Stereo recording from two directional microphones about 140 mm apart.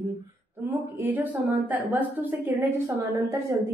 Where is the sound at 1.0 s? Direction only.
15° right (ahead or behind).